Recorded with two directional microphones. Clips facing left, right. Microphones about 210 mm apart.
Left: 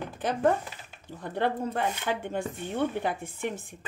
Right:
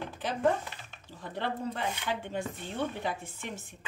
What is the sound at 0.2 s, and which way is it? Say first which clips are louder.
Speech: left 3 dB; 50° left (ahead or behind).